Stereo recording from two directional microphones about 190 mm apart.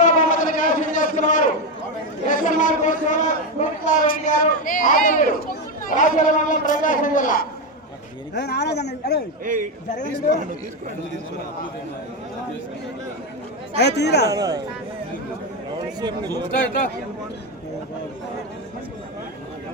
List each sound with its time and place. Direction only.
0.0 s a sound: 40° left (ahead or behind)
3.6 s a man's voice: 40° left (ahead or behind)
8.3 s speech: 60° left (ahead or behind)
9.4 s a man's voice: 45° right (ahead or behind)
13.7 s speech: 60° left (ahead or behind)
14.3 s speech: 20° right (ahead or behind)
16.0 s speech: 20° right (ahead or behind)